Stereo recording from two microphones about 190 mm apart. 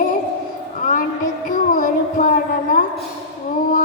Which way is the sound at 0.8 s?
45° left (ahead or behind).